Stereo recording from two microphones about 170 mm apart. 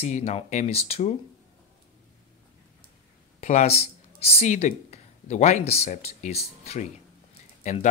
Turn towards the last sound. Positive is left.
turn(degrees=45)  # may be behind; listen again after turning